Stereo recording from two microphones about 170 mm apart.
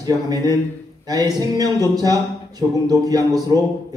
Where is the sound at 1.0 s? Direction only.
20° right (ahead or behind).